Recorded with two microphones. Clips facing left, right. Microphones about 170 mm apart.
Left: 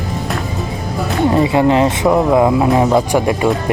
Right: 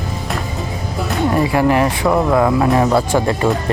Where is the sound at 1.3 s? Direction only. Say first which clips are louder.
Left 2 dB; 20° left (ahead or behind).